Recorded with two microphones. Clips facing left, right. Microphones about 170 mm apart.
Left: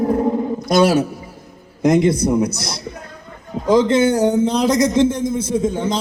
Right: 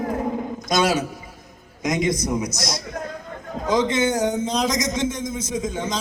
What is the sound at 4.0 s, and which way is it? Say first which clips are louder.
Speech: left 6 dB; 30° left (ahead or behind).